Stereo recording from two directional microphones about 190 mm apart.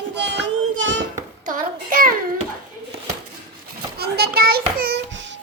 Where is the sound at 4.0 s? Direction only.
55° right (ahead or behind).